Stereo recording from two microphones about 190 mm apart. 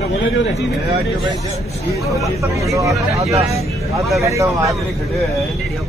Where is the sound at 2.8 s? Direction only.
15° right (ahead or behind).